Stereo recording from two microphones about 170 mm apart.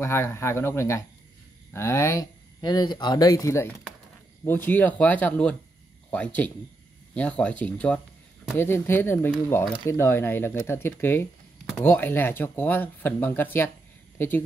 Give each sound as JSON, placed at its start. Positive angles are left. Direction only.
{"t": 0.0, "sound": "speech", "side_deg": 15}